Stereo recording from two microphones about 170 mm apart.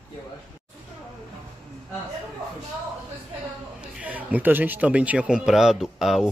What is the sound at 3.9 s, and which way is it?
A man's voice, 10° right (ahead or behind).